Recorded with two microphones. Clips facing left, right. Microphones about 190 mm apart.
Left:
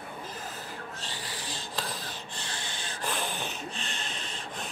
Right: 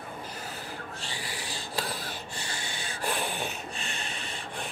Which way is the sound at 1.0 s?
10° right (ahead or behind).